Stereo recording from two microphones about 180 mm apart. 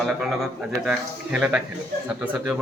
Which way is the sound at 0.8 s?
5° right (ahead or behind).